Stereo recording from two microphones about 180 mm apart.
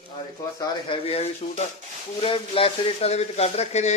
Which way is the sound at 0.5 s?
30° left (ahead or behind).